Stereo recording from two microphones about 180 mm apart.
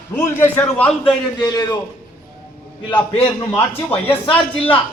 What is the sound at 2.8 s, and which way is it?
Speech, 25° left (ahead or behind).